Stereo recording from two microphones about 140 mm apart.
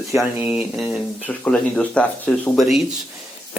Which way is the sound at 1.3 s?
10° left (ahead or behind).